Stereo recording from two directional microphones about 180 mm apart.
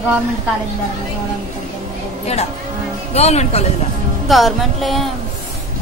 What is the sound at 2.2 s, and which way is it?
A woman's voice, 35° left (ahead or behind).